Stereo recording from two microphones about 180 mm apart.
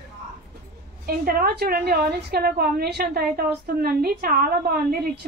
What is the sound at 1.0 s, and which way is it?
A woman's voice, 55° right (ahead or behind).